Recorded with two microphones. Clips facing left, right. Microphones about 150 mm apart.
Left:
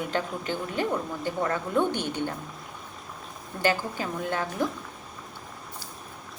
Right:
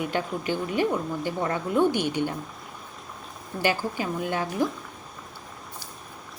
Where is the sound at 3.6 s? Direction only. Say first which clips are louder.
Right 1 dB; 10° right (ahead or behind).